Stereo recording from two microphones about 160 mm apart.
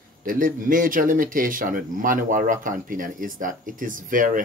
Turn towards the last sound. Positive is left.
turn(degrees=-55)  # may be behind; listen again after turning